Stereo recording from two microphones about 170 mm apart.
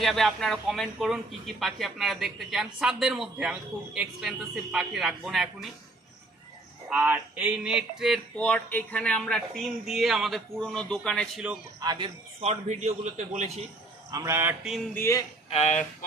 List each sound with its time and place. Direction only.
0.0 s a man's voice: centre (ahead or behind)
6.8 s a man's voice: 10° right (ahead or behind)
11.8 s speech: 25° right (ahead or behind)
12.4 s a man's voice: 40° right (ahead or behind)
14.1 s a man's voice: 15° right (ahead or behind)
14.9 s a man's voice: 15° left (ahead or behind)
15.4 s speech: 40° left (ahead or behind)